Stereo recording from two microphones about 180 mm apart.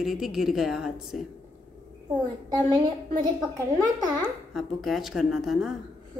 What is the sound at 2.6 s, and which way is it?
Speech, 25° right (ahead or behind).